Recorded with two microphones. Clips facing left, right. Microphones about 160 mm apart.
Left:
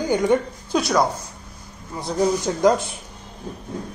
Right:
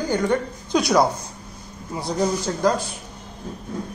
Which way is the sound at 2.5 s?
15° left (ahead or behind).